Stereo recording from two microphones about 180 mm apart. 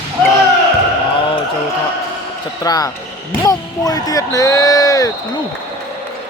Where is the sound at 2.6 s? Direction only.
20° left (ahead or behind).